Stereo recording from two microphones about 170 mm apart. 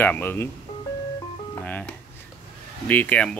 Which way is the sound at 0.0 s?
10° left (ahead or behind).